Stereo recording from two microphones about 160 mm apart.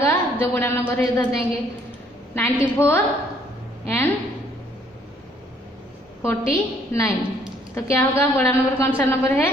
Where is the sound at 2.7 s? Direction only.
15° left (ahead or behind).